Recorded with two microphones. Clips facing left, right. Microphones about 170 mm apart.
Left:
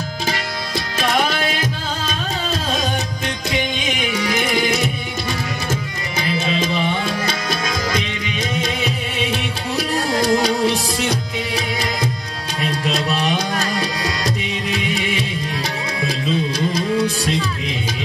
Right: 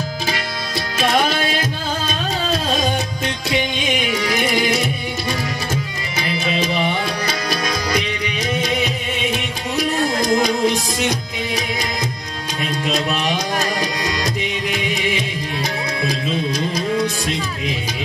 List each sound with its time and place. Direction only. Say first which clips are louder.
10.2 s music: left 1 dB; 30° left (ahead or behind)